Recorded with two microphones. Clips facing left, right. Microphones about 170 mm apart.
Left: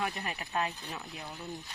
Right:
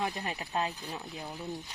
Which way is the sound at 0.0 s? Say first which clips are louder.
Right 1 dB; 20° right (ahead or behind).